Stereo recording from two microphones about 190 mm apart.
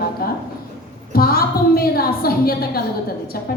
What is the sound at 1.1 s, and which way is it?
A woman's voice, 50° left (ahead or behind).